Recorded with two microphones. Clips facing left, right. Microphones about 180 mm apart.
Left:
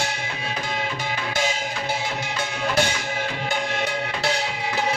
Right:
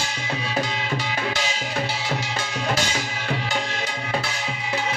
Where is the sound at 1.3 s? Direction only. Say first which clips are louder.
Left 3 dB; 50° left (ahead or behind).